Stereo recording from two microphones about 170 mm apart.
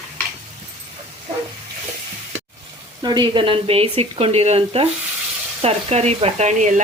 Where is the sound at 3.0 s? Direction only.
25° right (ahead or behind).